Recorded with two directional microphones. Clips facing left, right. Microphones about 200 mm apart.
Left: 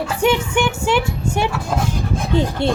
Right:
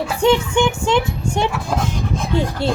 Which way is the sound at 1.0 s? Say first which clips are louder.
Left 1 dB; 5° left (ahead or behind).